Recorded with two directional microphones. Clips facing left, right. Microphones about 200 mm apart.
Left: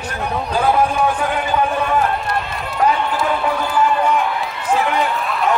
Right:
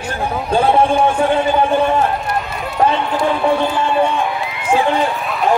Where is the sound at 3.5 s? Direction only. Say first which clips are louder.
Right 2 dB; 25° right (ahead or behind).